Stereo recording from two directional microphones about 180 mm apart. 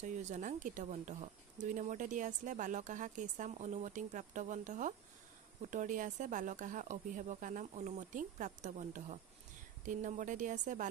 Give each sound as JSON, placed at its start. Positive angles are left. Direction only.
{"t": 0.0, "sound": "speech", "side_deg": -40}